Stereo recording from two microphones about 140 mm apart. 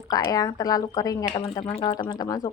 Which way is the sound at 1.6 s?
40° left (ahead or behind).